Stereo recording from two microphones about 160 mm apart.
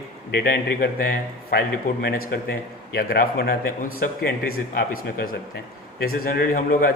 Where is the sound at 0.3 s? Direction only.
80° left; by 6.9 s 65° left (ahead or behind).